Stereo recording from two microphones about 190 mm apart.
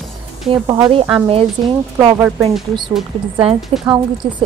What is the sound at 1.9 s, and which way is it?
Speech, 15° right (ahead or behind).